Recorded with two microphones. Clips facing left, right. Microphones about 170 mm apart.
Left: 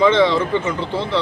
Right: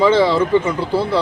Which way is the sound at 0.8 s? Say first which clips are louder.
Right 4 dB; 10° right (ahead or behind).